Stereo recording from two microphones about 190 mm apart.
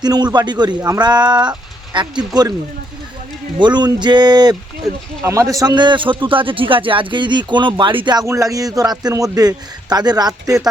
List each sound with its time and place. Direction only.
0.0 s speech: 20° right (ahead or behind)
3.6 s speech: 25° right (ahead or behind)